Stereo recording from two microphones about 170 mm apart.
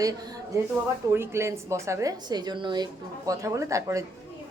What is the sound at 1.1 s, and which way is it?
A woman's voice, 15° right (ahead or behind).